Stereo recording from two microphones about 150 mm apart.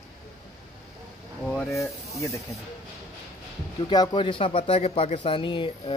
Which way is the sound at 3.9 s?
30° left (ahead or behind).